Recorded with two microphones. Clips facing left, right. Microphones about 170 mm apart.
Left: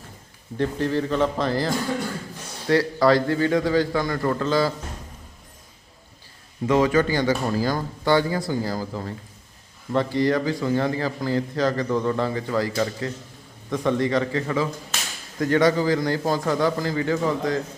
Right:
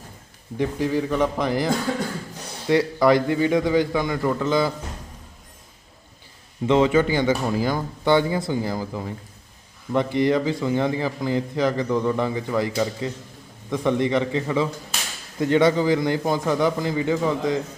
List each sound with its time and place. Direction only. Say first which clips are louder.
0.5 s a man's voice: right 1 dB; 10° right (ahead or behind)
6.7 s a man's voice: right 1 dB; 20° right (ahead or behind)